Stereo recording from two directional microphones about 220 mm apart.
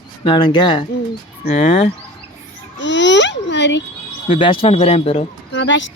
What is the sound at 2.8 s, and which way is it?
A child's voice, 55° left (ahead or behind).